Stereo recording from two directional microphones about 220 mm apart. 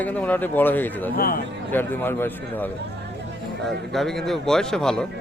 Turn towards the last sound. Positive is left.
turn(degrees=5)  # may be behind; listen again after turning